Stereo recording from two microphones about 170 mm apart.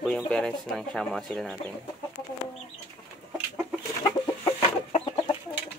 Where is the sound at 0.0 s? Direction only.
5° left (ahead or behind).